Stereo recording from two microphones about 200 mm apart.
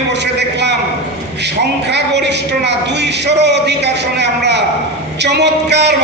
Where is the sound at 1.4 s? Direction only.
60° right (ahead or behind).